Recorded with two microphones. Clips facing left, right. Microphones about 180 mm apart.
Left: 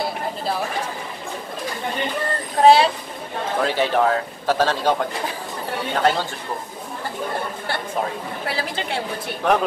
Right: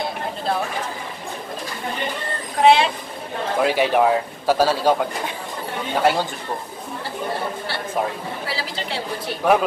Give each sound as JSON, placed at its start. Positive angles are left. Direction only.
{"t": 2.6, "sound": "speech", "side_deg": 40}
{"t": 3.6, "sound": "a man's voice", "side_deg": -15}
{"t": 5.9, "sound": "a man's voice", "side_deg": -10}
{"t": 8.5, "sound": "a woman's voice", "side_deg": 50}
{"t": 9.4, "sound": "a man's voice", "side_deg": -10}